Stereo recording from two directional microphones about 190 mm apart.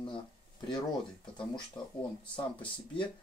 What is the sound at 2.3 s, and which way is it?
Speech, 25° left (ahead or behind).